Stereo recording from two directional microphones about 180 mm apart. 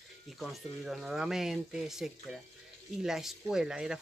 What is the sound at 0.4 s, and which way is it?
Speech, centre (ahead or behind).